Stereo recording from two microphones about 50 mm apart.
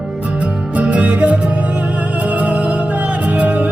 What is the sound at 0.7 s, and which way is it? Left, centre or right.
Music, right.